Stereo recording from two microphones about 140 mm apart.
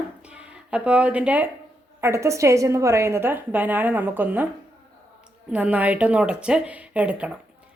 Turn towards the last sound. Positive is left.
turn(degrees=-10)  # may be behind; listen again after turning